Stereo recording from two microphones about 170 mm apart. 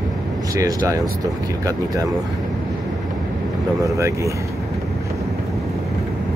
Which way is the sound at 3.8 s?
20° right (ahead or behind).